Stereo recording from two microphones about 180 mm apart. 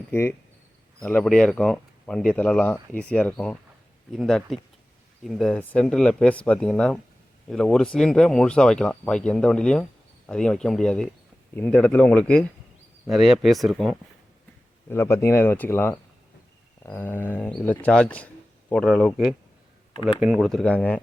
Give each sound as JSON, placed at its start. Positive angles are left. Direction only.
{"t": 0.1, "sound": "speech", "side_deg": 15}
{"t": 14.8, "sound": "speech", "side_deg": 15}